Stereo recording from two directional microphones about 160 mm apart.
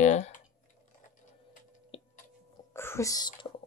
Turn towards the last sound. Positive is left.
turn(degrees=30)  # may be behind; listen again after turning